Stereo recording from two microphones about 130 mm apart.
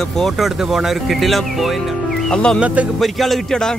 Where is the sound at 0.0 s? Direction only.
5° left (ahead or behind).